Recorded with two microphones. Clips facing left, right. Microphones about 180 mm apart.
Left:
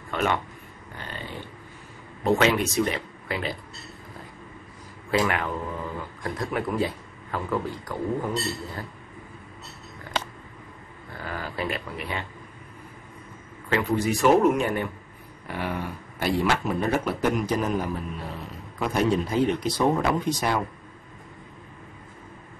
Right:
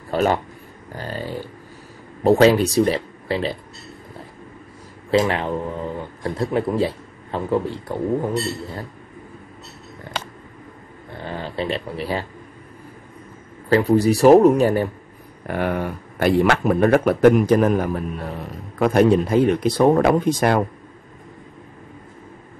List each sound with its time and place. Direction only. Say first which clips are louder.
0.1 s speech: right 7 dB; 35° right (ahead or behind)
5.1 s speech: right 6 dB; 25° right (ahead or behind)
11.1 s speech: right 5 dB; 25° right (ahead or behind)
13.7 s speech: right 8 dB; 35° right (ahead or behind)
15.4 s speech: right 8 dB; 55° right (ahead or behind)